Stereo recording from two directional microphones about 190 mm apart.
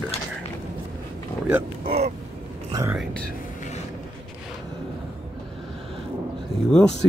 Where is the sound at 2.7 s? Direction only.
15° right (ahead or behind).